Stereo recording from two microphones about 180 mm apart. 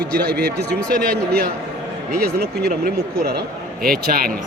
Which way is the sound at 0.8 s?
5° left (ahead or behind).